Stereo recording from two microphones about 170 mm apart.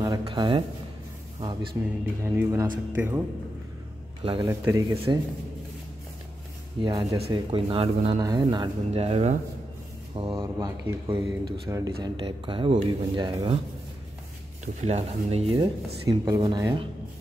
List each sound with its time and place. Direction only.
0.0 s a sound: 25° right (ahead or behind)
1.4 s speech: 25° right (ahead or behind)
2.2 s speech: 15° right (ahead or behind)
4.2 s a man's voice: 30° right (ahead or behind)
4.5 s speech: 20° right (ahead or behind)
4.9 s speech: 30° right (ahead or behind)
6.8 s speech: 25° right (ahead or behind); by 9.4 s 40° right (ahead or behind)
10.1 s speech: 30° right (ahead or behind)
14.8 s speech: 40° right (ahead or behind)
15.6 s speech: 20° right (ahead or behind)